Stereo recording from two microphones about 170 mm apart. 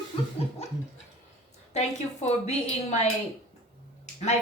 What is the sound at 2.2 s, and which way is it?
Speech, 40° left (ahead or behind).